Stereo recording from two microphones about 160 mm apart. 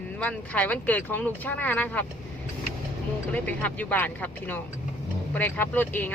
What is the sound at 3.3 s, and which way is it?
Speech, 10° left (ahead or behind).